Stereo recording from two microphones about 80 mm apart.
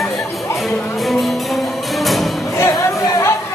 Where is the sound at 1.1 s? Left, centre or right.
Centre.